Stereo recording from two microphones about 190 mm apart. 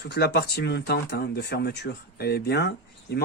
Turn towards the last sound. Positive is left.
turn(degrees=60)  # may be behind; listen again after turning